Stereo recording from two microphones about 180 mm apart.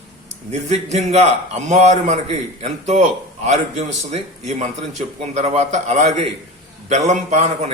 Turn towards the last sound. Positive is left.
turn(degrees=-40)  # may be behind; listen again after turning